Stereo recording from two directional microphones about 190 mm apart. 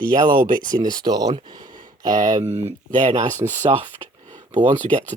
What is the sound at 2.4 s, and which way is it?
Speech, 35° right (ahead or behind).